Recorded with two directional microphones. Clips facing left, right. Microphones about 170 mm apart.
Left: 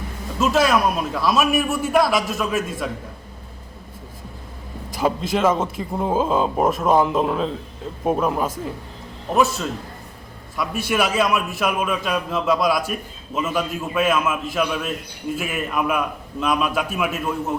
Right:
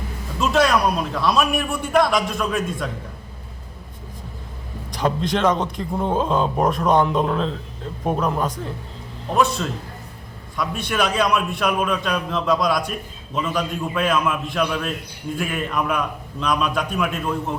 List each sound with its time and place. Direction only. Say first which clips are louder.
0.3 s a man's voice: even; centre (ahead or behind)
4.9 s a man's voice: even; 5° left (ahead or behind)